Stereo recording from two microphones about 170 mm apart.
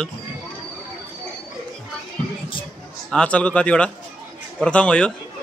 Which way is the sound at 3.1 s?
5° left (ahead or behind).